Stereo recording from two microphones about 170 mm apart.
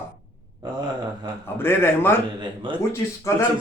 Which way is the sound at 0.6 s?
25° right (ahead or behind).